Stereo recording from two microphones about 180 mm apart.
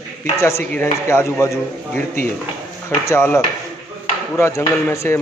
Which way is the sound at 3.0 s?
15° left (ahead or behind).